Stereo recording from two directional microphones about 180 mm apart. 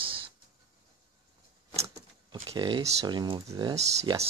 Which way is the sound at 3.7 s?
35° right (ahead or behind).